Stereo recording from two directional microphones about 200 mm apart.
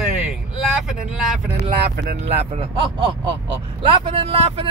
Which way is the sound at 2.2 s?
30° right (ahead or behind).